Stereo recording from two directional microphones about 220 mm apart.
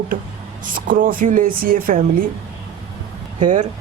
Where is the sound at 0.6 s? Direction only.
40° right (ahead or behind).